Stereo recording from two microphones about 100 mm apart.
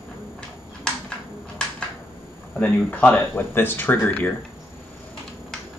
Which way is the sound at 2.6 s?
15° left (ahead or behind).